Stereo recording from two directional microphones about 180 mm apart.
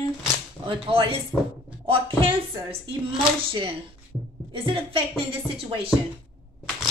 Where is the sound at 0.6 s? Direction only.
30° right (ahead or behind).